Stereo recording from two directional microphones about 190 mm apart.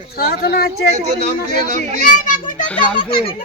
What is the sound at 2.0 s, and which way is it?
Speech, 45° left (ahead or behind).